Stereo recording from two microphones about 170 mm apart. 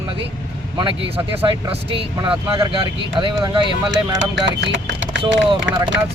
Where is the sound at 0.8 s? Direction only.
30° right (ahead or behind).